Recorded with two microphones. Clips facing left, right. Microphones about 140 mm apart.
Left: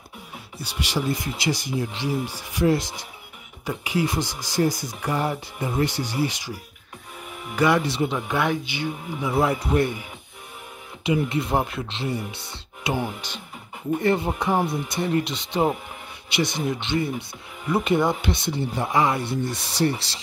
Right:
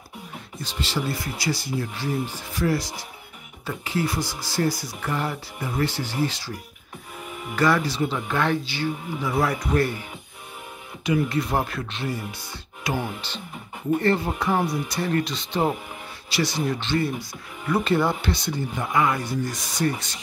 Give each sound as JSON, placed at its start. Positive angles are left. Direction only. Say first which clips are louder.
{"t": 0.6, "sound": "speech", "louder": "left 1 dB", "side_deg": 10}
{"t": 11.1, "sound": "speech", "louder": "even", "side_deg": 25}
{"t": 12.8, "sound": "speech", "louder": "left 1 dB", "side_deg": 15}